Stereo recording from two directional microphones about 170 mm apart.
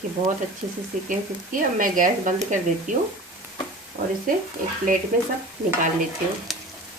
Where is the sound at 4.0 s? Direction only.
55° right (ahead or behind).